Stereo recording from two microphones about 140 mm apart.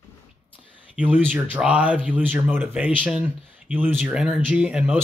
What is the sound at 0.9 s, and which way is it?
Speech, 10° right (ahead or behind).